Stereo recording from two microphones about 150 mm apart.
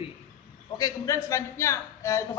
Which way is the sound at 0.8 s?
20° left (ahead or behind).